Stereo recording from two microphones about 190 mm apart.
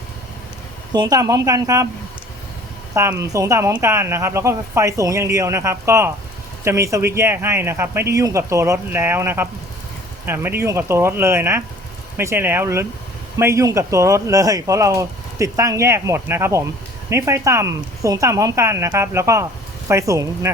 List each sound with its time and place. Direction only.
0.9 s a woman's voice: 20° right (ahead or behind)
2.9 s speech: 15° right (ahead or behind)